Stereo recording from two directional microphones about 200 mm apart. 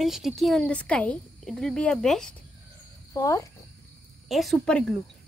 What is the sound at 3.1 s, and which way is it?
Speech, 15° left (ahead or behind).